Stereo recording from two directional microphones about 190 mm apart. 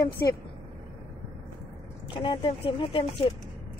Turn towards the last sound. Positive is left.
turn(degrees=25)  # may be behind; listen again after turning